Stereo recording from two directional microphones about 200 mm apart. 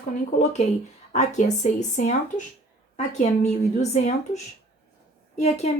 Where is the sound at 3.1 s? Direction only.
35° left (ahead or behind).